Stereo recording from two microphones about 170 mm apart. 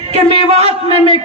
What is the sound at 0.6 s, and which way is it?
Speech, 30° left (ahead or behind).